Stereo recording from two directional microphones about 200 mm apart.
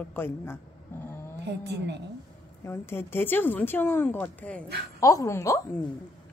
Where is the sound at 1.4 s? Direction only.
60° right (ahead or behind).